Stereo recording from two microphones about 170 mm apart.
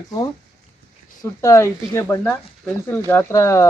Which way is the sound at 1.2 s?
15° left (ahead or behind).